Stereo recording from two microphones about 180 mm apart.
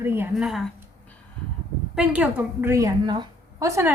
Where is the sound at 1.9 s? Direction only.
5° right (ahead or behind).